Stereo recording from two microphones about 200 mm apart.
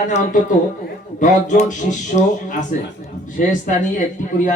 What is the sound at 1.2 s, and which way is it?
A man's voice, 40° left (ahead or behind).